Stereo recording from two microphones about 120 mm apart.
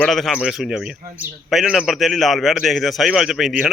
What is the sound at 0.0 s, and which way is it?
A man's voice, centre (ahead or behind).